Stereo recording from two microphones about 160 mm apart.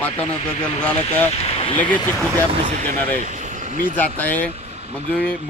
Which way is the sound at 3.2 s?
50° right (ahead or behind).